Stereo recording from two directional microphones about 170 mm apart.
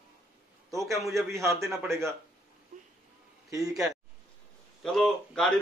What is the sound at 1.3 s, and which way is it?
Speech, 15° right (ahead or behind).